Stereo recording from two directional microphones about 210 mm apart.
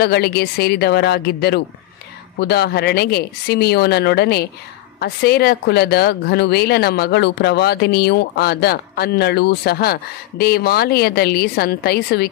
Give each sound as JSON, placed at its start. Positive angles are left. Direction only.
{"t": 0.0, "sound": "speech", "side_deg": 50}